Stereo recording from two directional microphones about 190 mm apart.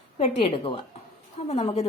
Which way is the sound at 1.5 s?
30° left (ahead or behind).